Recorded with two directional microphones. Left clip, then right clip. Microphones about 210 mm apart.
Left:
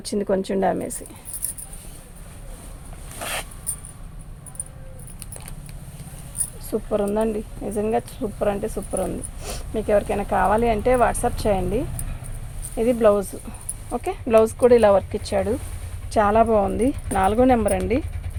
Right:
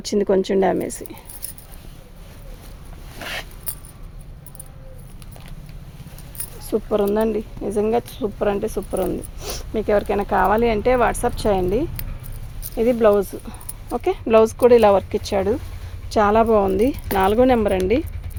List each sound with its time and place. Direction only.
0.0 s a woman's voice: 35° right (ahead or behind)
3.2 s zipper: 5° right (ahead or behind)
6.7 s speech: 45° right (ahead or behind)